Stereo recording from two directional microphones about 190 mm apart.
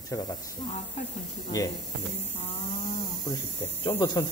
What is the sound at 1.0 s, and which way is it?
Speech, 35° left (ahead or behind).